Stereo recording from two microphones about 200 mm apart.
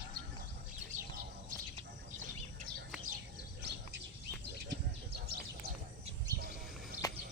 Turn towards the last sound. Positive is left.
turn(degrees=15)  # may be behind; listen again after turning